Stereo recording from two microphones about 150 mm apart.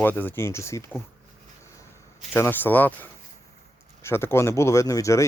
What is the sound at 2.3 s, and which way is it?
Speech, 15° left (ahead or behind).